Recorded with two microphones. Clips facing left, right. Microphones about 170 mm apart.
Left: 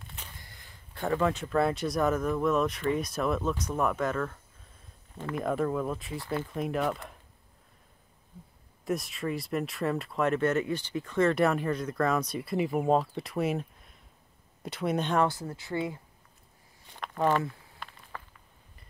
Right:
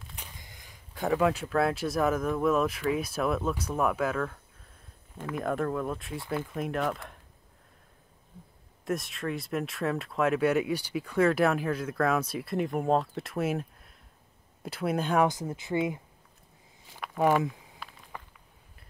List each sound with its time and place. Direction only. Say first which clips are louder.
0.1 s a sound: even; 15° right (ahead or behind)
1.0 s speech: right 2 dB; 5° right (ahead or behind)
8.8 s speech: even; centre (ahead or behind)
15.2 s speech: right 2 dB; 20° right (ahead or behind)
16.9 s speech: right 2 dB; 5° right (ahead or behind)
18.1 s a sound: even; 15° right (ahead or behind)